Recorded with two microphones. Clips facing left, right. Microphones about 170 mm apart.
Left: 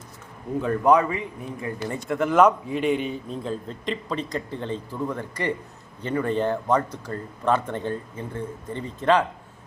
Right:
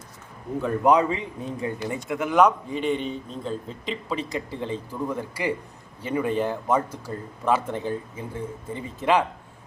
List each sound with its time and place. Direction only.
0.9 s a man's voice: 20° right (ahead or behind)
1.9 s a man's voice: 5° right (ahead or behind)